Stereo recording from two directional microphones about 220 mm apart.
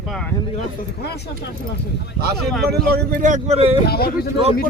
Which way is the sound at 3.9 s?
45° left (ahead or behind).